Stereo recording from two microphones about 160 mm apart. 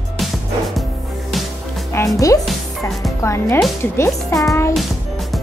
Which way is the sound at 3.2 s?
15° left (ahead or behind).